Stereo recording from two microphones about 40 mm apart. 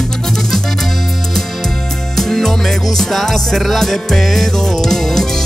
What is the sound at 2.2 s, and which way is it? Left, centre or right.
Music, centre.